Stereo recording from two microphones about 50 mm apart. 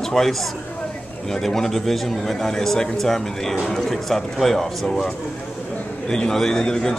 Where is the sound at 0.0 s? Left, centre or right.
Centre.